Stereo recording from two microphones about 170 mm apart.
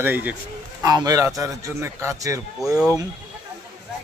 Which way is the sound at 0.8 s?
20° right (ahead or behind).